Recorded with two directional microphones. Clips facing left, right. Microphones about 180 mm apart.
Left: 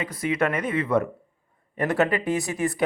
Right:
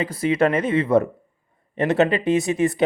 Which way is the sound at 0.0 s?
30° right (ahead or behind).